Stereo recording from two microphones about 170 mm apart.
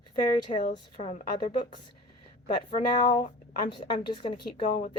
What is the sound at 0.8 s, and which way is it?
Speech, 35° left (ahead or behind).